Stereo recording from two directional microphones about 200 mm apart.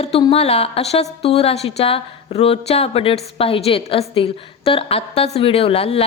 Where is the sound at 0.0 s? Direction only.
30° left (ahead or behind).